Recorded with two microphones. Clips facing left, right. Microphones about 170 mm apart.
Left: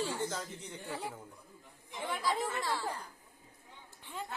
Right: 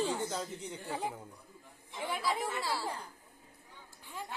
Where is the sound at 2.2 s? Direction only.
10° right (ahead or behind).